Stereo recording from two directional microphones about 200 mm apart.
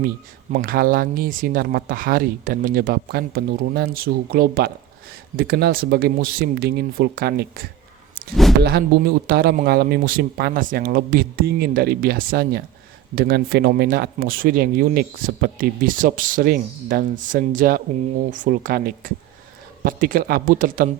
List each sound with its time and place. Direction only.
0.5 s speech: 45° right (ahead or behind)